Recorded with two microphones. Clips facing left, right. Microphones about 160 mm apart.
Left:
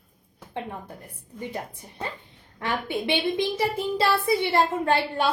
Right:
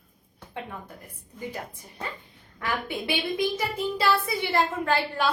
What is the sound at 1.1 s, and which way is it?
A woman's voice, 30° left (ahead or behind).